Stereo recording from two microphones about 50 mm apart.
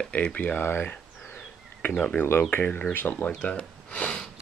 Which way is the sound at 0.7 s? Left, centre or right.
Left.